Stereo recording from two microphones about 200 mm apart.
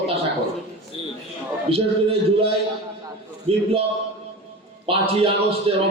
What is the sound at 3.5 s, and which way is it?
Speech, 30° right (ahead or behind).